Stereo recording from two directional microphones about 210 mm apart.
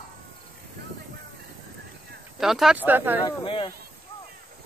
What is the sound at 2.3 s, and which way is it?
Speech, centre (ahead or behind).